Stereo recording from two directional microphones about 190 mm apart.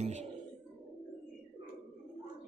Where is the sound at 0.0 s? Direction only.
35° right (ahead or behind).